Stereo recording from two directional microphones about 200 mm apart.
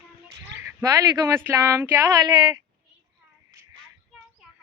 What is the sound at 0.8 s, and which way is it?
Speech, 15° right (ahead or behind).